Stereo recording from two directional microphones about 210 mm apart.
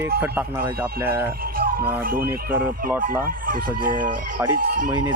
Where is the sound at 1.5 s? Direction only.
45° right (ahead or behind).